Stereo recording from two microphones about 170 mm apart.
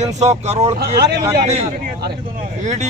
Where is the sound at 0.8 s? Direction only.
70° right (ahead or behind).